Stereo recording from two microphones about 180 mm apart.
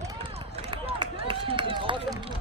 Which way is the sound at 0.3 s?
30° right (ahead or behind).